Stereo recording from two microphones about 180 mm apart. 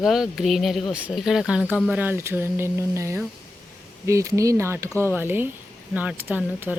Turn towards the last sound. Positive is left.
turn(degrees=-10)  # may be behind; listen again after turning